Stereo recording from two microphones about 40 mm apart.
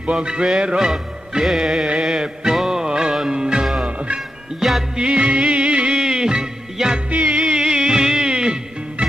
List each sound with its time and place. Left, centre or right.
0.1 s music: right
1.5 s music: centre
2.8 s music: centre
4.6 s music: centre
4.9 s music: right
5.9 s music: centre
7.1 s music: right
7.4 s music: centre